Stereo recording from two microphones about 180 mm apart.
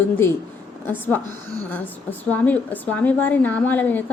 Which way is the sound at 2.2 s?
10° left (ahead or behind).